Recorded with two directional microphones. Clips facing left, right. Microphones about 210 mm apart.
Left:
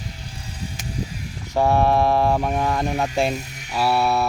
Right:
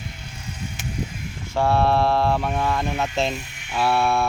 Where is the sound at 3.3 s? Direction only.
40° left (ahead or behind).